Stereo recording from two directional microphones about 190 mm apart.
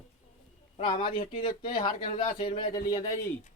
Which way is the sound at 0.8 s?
25° left (ahead or behind).